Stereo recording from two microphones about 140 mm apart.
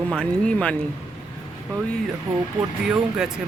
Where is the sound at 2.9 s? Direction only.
5° right (ahead or behind).